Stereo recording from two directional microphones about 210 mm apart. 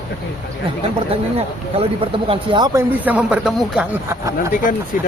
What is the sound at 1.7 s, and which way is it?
Speech, 25° right (ahead or behind).